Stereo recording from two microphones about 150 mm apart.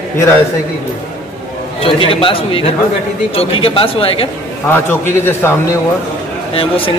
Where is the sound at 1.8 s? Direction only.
40° left (ahead or behind).